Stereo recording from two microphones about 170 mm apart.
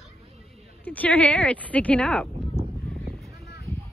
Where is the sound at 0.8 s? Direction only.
10° left (ahead or behind).